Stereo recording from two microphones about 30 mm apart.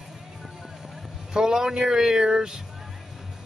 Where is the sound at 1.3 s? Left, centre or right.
Right.